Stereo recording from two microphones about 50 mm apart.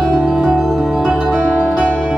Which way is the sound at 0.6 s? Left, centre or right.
Centre.